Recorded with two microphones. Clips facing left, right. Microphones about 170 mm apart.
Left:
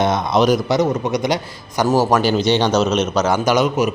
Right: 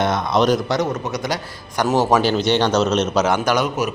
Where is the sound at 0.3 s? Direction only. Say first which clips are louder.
Left 2 dB; 5° left (ahead or behind).